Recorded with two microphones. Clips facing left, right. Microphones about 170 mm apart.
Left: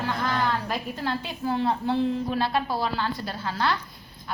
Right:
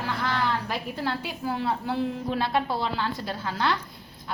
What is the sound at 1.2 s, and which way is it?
Speech, 10° right (ahead or behind).